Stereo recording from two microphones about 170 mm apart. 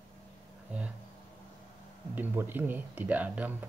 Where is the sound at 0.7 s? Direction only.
10° right (ahead or behind).